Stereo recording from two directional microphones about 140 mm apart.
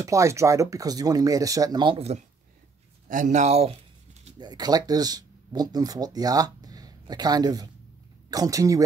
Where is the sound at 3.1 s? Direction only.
65° right (ahead or behind).